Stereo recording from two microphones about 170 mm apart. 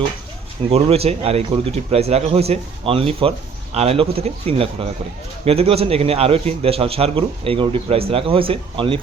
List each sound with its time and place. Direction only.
0.7 s a man's voice: 35° right (ahead or behind)